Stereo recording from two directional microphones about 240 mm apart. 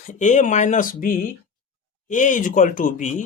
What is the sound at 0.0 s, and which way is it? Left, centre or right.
Speech, left.